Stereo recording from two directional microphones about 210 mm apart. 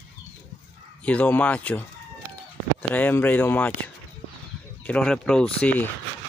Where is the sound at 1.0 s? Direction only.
5° left (ahead or behind).